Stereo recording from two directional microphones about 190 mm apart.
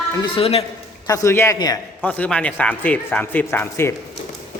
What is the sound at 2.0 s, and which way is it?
Speech, 10° left (ahead or behind).